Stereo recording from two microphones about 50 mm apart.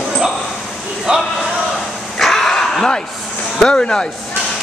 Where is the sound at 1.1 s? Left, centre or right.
Right.